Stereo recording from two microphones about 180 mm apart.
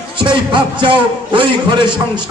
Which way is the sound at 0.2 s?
25° right (ahead or behind).